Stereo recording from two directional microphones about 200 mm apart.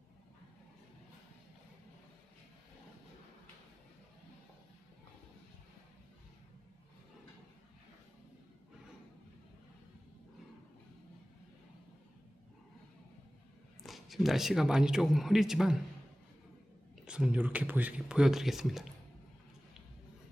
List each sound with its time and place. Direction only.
13.8 s speech: centre (ahead or behind)
17.1 s speech: 5° right (ahead or behind)